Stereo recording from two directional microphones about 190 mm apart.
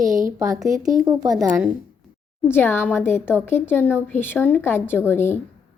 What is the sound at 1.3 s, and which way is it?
Speech, 5° right (ahead or behind).